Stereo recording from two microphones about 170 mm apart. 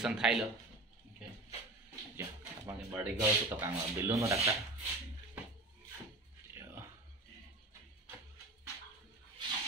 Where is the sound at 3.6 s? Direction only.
15° right (ahead or behind).